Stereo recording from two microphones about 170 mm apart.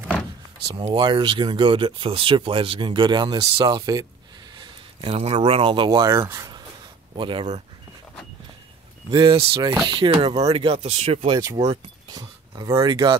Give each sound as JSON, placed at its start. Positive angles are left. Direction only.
{"t": 0.7, "sound": "speech", "side_deg": -30}
{"t": 7.2, "sound": "speech", "side_deg": -30}
{"t": 9.1, "sound": "speech", "side_deg": -30}
{"t": 11.2, "sound": "speech", "side_deg": -25}